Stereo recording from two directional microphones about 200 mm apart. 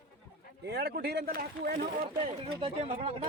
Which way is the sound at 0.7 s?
55° right (ahead or behind).